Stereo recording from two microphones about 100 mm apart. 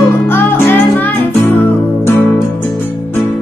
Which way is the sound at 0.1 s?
20° left (ahead or behind).